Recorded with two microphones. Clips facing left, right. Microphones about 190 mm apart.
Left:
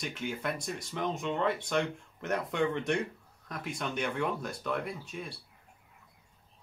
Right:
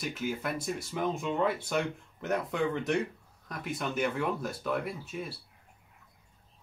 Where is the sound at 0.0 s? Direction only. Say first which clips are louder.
Right 2 dB; 5° right (ahead or behind).